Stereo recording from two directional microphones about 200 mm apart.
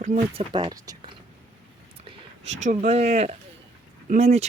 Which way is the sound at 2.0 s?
35° right (ahead or behind).